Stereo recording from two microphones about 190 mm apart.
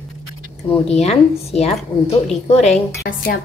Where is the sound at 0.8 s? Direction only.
35° left (ahead or behind).